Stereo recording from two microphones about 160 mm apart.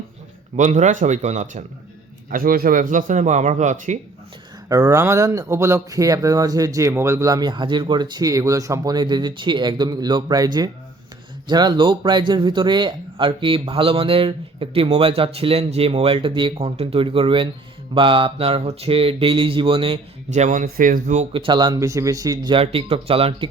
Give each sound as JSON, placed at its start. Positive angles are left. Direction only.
{"t": 0.5, "sound": "speech", "side_deg": -50}
{"t": 2.3, "sound": "speech", "side_deg": -65}
{"t": 4.7, "sound": "a man's voice", "side_deg": -20}
{"t": 21.3, "sound": "speech", "side_deg": -30}